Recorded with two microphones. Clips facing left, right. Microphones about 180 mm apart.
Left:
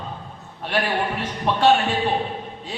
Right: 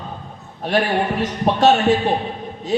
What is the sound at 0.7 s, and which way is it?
A man's voice, 45° right (ahead or behind).